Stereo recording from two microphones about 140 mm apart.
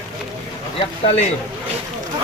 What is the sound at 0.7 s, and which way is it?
Speech, 45° left (ahead or behind).